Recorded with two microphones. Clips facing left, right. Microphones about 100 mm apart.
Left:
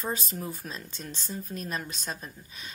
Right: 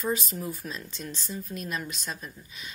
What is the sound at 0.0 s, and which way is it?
Speech, 35° left (ahead or behind).